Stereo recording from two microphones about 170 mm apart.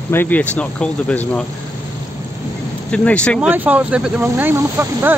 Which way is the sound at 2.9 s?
5° left (ahead or behind).